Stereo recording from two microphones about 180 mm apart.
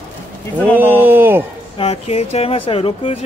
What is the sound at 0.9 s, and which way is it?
Speech, 10° right (ahead or behind).